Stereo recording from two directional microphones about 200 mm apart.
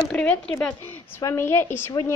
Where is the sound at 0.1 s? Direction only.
5° left (ahead or behind).